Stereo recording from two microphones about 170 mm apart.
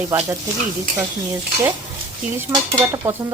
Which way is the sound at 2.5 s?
15° right (ahead or behind).